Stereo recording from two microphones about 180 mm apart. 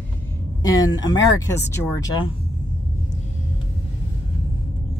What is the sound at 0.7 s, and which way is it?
Speech, 20° left (ahead or behind).